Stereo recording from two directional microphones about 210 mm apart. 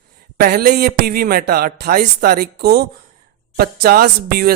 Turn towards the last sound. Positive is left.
turn(degrees=-45)  # may be behind; listen again after turning